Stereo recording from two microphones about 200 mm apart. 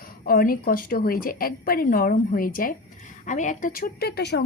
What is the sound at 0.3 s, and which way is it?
Speech, 45° left (ahead or behind).